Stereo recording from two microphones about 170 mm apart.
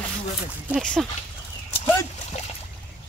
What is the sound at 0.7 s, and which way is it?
Speech, centre (ahead or behind).